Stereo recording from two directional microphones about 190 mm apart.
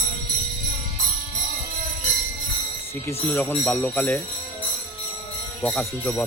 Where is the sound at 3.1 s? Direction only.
10° left (ahead or behind).